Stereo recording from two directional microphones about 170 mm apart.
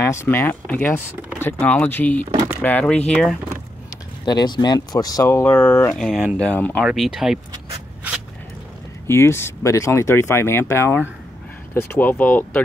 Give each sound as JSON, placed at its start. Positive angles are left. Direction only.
{"t": 0.0, "sound": "speech", "side_deg": 15}
{"t": 4.3, "sound": "speech", "side_deg": 25}
{"t": 9.0, "sound": "speech", "side_deg": 15}